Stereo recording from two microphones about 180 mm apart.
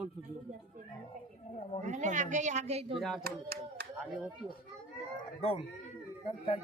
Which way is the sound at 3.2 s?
55° right (ahead or behind).